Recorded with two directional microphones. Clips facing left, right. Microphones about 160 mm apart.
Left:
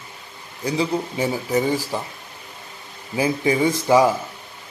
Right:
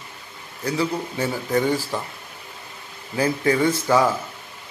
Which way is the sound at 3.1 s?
15° left (ahead or behind).